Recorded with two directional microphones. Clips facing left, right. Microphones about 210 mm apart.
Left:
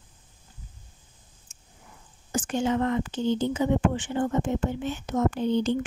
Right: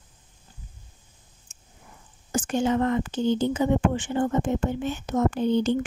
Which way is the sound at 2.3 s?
45° right (ahead or behind).